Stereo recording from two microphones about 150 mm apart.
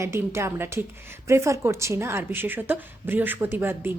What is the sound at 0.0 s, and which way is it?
A woman's voice, 20° right (ahead or behind).